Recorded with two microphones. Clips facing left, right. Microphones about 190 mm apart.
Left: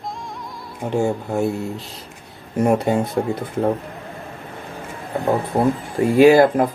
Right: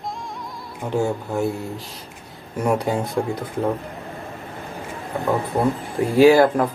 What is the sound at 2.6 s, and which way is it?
Speech, 25° left (ahead or behind).